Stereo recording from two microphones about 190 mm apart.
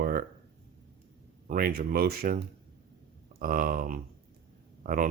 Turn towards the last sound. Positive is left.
turn(degrees=-45)  # may be behind; listen again after turning